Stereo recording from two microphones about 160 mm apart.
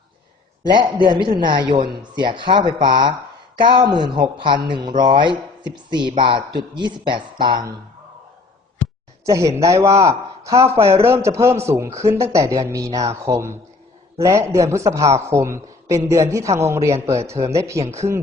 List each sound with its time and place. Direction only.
0.7 s speech: 30° right (ahead or behind)
9.2 s a man's voice: 20° right (ahead or behind)